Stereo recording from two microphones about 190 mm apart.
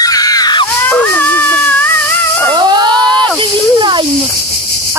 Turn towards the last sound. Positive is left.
turn(degrees=-25)  # may be behind; listen again after turning